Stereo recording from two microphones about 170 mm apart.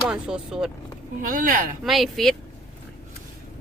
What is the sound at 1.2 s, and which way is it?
Speech, 55° right (ahead or behind).